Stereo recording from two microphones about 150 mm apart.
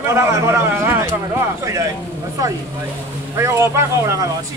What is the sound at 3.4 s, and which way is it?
Speech, 20° right (ahead or behind).